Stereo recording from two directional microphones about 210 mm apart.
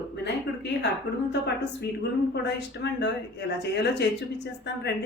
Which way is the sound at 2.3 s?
55° left (ahead or behind).